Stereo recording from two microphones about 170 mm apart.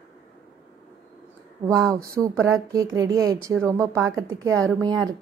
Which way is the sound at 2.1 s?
15° right (ahead or behind).